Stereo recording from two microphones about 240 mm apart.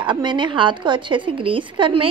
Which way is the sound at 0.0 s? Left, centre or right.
Centre.